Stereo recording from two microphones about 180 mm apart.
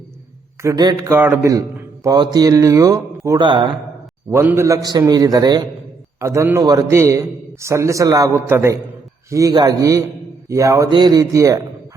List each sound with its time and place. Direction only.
0.6 s a man's voice: 20° right (ahead or behind)
4.3 s a man's voice: 15° right (ahead or behind)